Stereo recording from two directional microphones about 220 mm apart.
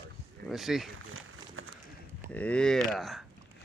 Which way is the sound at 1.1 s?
70° right (ahead or behind).